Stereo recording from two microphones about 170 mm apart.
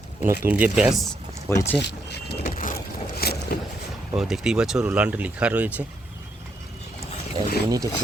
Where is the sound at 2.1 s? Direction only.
75° left (ahead or behind).